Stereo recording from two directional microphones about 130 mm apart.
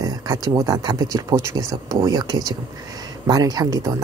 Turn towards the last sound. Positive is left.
turn(degrees=-30)  # may be behind; listen again after turning